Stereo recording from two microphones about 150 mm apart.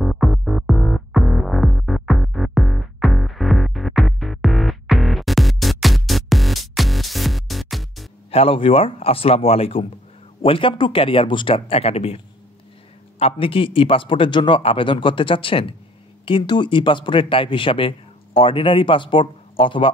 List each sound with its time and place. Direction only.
0.0 s music: centre (ahead or behind)
8.3 s a man's voice: 40° left (ahead or behind)
13.2 s a man's voice: 40° left (ahead or behind)